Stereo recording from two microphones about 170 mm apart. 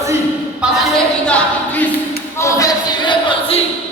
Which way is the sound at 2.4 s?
20° left (ahead or behind).